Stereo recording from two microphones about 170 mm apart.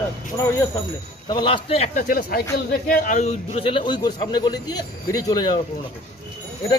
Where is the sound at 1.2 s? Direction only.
30° left (ahead or behind).